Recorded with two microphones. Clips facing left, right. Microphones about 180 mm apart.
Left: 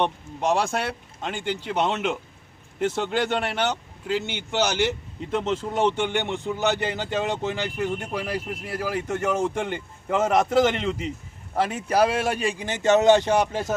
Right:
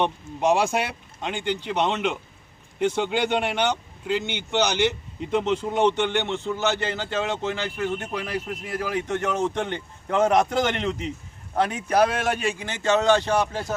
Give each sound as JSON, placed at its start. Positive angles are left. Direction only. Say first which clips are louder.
{"t": 0.0, "sound": "speech", "louder": "right 2 dB", "side_deg": 0}